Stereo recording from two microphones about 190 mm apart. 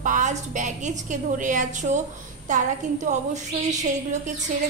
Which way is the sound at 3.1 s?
40° right (ahead or behind).